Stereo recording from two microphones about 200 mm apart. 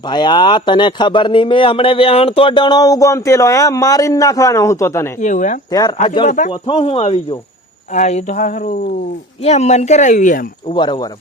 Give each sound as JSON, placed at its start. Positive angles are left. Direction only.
{"t": 0.1, "sound": "a man's voice", "side_deg": 20}
{"t": 5.2, "sound": "speech", "side_deg": 40}
{"t": 5.7, "sound": "a man's voice", "side_deg": 20}
{"t": 6.2, "sound": "speech", "side_deg": 40}
{"t": 6.5, "sound": "a man's voice", "side_deg": 30}
{"t": 10.8, "sound": "a man's voice", "side_deg": 20}